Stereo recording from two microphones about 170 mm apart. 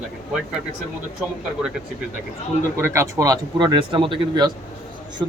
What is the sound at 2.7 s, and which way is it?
Speech, 15° right (ahead or behind).